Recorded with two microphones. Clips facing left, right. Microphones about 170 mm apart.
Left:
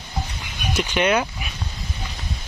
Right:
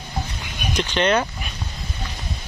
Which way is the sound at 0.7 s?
10° left (ahead or behind).